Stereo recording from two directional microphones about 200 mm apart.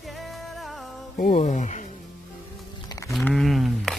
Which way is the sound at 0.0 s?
Centre (ahead or behind).